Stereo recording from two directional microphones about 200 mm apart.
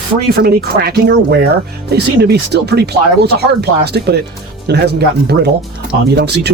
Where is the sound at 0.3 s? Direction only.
50° right (ahead or behind).